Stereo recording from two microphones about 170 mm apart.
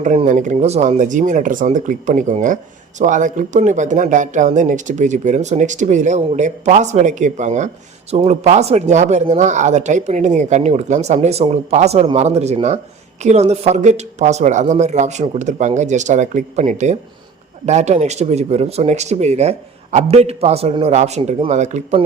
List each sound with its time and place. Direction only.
0.3 s speech: 45° right (ahead or behind)